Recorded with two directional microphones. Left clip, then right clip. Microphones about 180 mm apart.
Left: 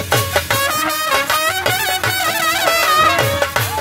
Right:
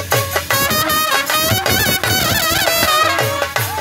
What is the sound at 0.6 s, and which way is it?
Music, 45° right (ahead or behind).